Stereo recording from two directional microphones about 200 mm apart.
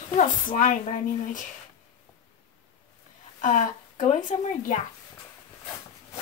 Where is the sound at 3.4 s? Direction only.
40° left (ahead or behind).